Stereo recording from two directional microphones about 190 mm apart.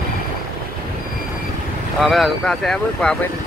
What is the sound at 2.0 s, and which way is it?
Speech, centre (ahead or behind).